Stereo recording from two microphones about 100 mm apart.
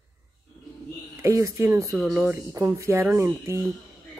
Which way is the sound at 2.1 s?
20° right (ahead or behind).